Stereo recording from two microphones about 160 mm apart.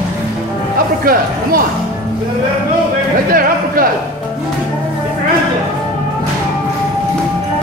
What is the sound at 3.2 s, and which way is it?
Speech, 65° right (ahead or behind).